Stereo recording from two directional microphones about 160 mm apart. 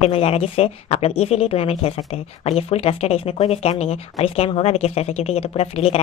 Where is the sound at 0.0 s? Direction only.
40° left (ahead or behind).